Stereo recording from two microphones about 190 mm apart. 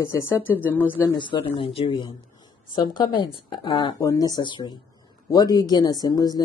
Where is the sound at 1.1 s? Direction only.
25° left (ahead or behind).